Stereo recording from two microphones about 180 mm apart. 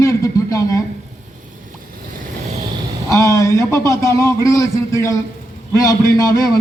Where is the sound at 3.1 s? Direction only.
15° left (ahead or behind).